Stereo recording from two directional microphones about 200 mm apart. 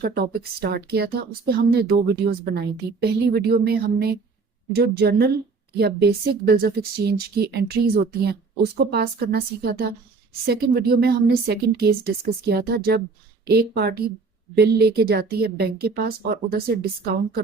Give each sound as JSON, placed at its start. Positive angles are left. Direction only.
{"t": 0.0, "sound": "a woman's voice", "side_deg": -50}